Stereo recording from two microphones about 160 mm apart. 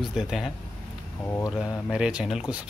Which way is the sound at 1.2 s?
15° left (ahead or behind).